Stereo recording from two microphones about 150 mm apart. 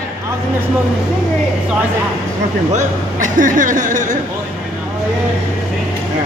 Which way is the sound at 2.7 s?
55° right (ahead or behind).